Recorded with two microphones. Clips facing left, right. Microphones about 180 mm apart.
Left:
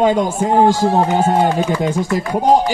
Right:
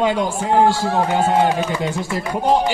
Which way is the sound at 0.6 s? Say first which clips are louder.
Left 5 dB; 20° left (ahead or behind).